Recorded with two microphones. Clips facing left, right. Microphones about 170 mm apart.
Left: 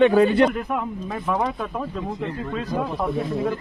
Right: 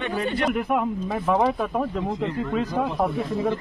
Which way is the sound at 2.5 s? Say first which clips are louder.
Even; 15° right (ahead or behind).